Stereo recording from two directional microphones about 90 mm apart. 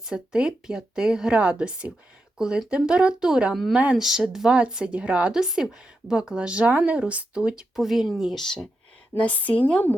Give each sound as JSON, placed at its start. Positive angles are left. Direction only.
{"t": 0.0, "sound": "speech", "side_deg": -10}
{"t": 9.1, "sound": "speech", "side_deg": 15}